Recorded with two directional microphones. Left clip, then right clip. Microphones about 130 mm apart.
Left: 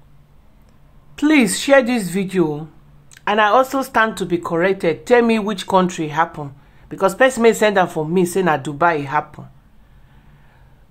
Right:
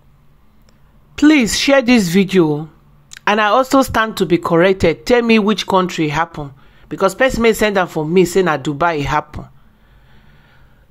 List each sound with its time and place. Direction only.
1.1 s a woman's voice: 35° right (ahead or behind)
2.6 s a sound: 30° right (ahead or behind)
3.5 s speech: 50° right (ahead or behind)
4.1 s a woman's voice: 35° right (ahead or behind)
6.9 s speech: 20° right (ahead or behind)
8.7 s a woman's voice: 40° right (ahead or behind)